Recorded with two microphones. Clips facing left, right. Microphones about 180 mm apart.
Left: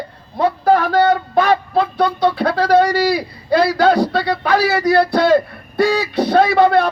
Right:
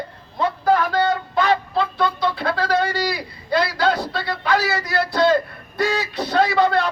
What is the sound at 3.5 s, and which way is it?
Speech, 50° left (ahead or behind).